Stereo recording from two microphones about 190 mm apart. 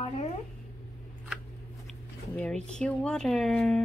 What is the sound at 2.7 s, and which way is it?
A woman's voice, 5° left (ahead or behind).